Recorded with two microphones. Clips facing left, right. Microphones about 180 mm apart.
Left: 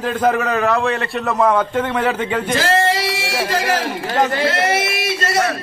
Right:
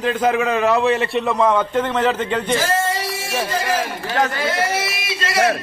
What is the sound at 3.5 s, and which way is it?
A man's voice, 80° left.